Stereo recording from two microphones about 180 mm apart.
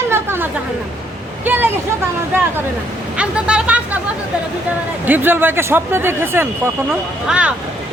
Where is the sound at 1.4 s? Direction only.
10° right (ahead or behind).